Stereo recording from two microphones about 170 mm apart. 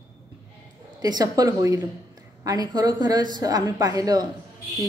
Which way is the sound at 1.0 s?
20° right (ahead or behind).